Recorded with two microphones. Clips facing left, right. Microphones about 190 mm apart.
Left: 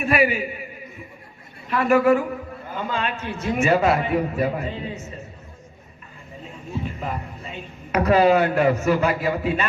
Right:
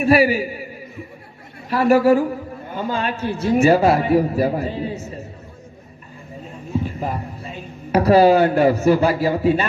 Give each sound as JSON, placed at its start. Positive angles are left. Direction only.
{"t": 0.0, "sound": "a man's voice", "side_deg": -35}
{"t": 6.8, "sound": "a sound", "side_deg": -35}
{"t": 7.9, "sound": "a man's voice", "side_deg": -35}